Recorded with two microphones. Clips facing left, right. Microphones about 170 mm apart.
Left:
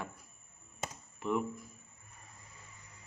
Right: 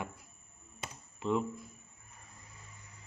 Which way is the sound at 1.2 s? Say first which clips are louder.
Right 1 dB; 20° right (ahead or behind).